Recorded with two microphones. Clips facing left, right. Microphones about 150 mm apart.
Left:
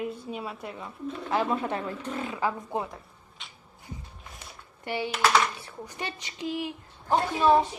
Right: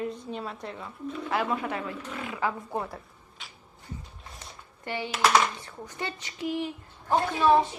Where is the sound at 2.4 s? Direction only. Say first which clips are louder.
Even; 15° left (ahead or behind).